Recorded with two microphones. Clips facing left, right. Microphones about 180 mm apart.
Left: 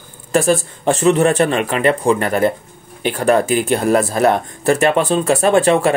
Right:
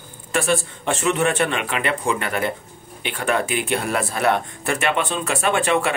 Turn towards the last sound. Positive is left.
turn(degrees=35)  # may be behind; listen again after turning